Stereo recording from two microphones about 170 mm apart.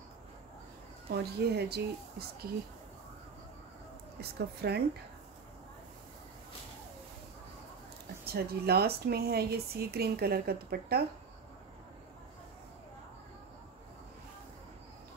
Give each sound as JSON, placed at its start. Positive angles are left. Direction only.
{"t": 1.1, "sound": "speech", "side_deg": -70}
{"t": 4.2, "sound": "speech", "side_deg": -70}
{"t": 8.3, "sound": "speech", "side_deg": -70}